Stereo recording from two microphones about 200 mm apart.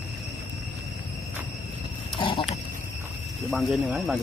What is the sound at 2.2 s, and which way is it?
Pig, 25° left (ahead or behind).